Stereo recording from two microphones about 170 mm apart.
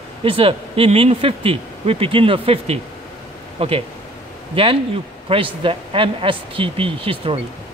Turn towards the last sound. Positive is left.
turn(degrees=-30)  # may be behind; listen again after turning